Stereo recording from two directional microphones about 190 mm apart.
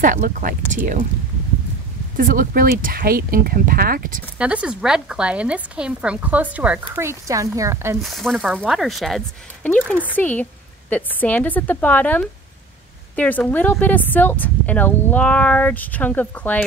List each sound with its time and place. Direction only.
0.0 s speech: 45° right (ahead or behind)
2.1 s speech: 45° right (ahead or behind)
4.4 s a woman's voice: 5° right (ahead or behind)
8.0 s a woman's voice: centre (ahead or behind)